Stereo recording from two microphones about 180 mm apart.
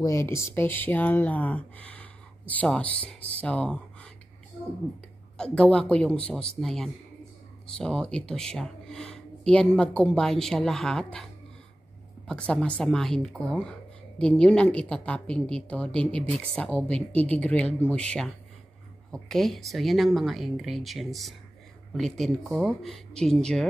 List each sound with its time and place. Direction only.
0.0 s speech: 15° left (ahead or behind)
5.4 s a woman's voice: 5° left (ahead or behind)
12.3 s a woman's voice: 5° left (ahead or behind)